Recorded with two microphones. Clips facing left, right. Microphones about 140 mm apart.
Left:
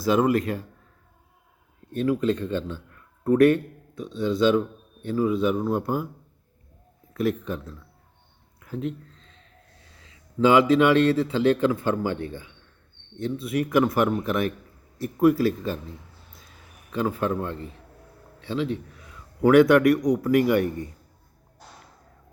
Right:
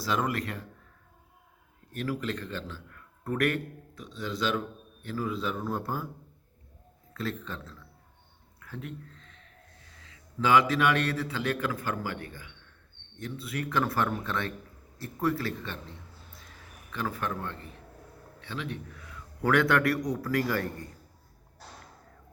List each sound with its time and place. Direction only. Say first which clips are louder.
0.0 s speech: left 9 dB; 25° left (ahead or behind)
1.9 s speech: left 10 dB; 20° left (ahead or behind)
7.1 s a man's voice: left 10 dB; 20° left (ahead or behind)
8.6 s a sound: left 10 dB; 20° left (ahead or behind)
10.1 s speech: left 5 dB; 25° left (ahead or behind)
16.9 s a man's voice: left 8 dB; 25° left (ahead or behind)